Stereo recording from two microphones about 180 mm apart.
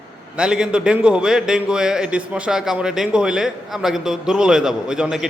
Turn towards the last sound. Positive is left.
turn(degrees=-5)  # may be behind; listen again after turning